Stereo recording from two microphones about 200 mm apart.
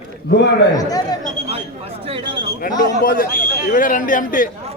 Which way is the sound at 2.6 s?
45° left (ahead or behind).